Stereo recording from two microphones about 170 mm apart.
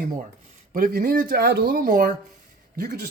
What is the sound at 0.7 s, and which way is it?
Speech, 55° right (ahead or behind).